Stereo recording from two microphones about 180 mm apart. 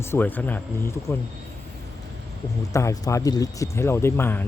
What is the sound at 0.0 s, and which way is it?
Speech, 10° left (ahead or behind).